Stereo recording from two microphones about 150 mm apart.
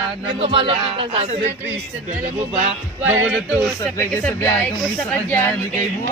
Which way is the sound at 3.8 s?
15° left (ahead or behind).